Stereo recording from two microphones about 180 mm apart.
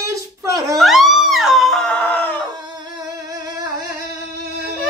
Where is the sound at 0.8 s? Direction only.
Centre (ahead or behind).